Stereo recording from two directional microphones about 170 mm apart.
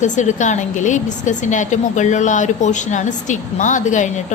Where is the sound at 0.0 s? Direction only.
45° left (ahead or behind).